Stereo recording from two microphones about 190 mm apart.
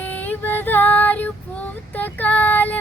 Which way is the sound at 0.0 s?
10° left (ahead or behind).